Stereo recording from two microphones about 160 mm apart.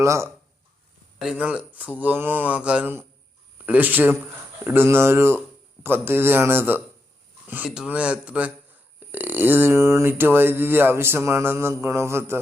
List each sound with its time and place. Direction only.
0.0 s speech: 20° right (ahead or behind)
1.2 s speech: 5° right (ahead or behind)